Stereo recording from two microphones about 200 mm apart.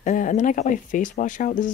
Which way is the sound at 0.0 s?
40° left (ahead or behind).